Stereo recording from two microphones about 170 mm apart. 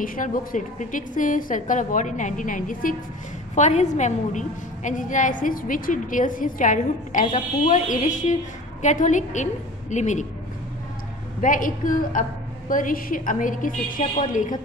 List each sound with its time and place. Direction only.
0.0 s a woman's voice: 55° left (ahead or behind)
11.4 s a woman's voice: 50° left (ahead or behind)